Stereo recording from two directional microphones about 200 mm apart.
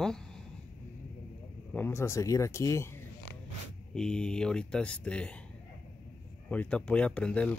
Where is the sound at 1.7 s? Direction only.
10° left (ahead or behind).